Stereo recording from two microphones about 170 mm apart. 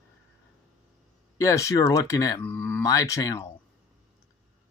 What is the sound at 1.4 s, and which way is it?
Speech, 20° left (ahead or behind).